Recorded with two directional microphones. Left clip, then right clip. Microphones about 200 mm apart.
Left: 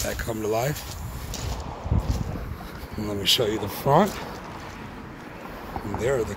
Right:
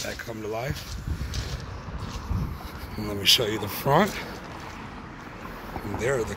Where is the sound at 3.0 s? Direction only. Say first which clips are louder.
Right 1 dB; 15° left (ahead or behind).